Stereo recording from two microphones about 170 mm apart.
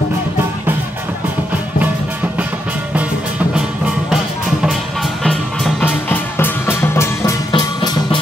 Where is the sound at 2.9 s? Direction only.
10° right (ahead or behind).